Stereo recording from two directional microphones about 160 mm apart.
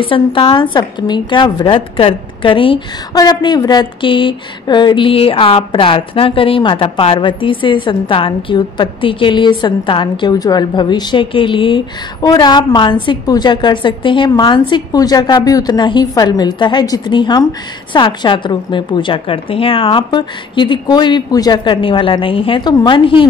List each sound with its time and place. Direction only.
0.0 s speech: 35° left (ahead or behind)